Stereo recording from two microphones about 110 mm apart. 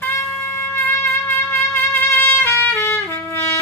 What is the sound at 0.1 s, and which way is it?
Trumpet, 25° left (ahead or behind).